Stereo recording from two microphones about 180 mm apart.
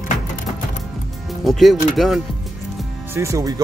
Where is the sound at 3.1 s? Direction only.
15° right (ahead or behind).